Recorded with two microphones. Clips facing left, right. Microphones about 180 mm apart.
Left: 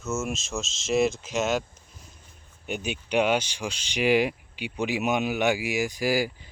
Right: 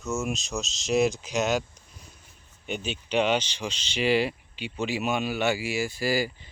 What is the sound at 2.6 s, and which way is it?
Speech, 10° left (ahead or behind).